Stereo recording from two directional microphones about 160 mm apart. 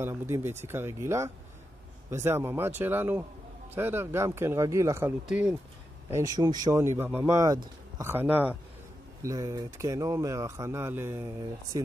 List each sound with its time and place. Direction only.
0.0 s speech: 15° right (ahead or behind)
5.2 s speech: 5° right (ahead or behind)
6.1 s speech: 25° right (ahead or behind)
9.2 s speech: 20° right (ahead or behind)